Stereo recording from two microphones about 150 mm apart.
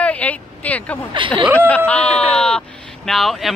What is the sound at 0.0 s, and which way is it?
Vehicle, 10° left (ahead or behind).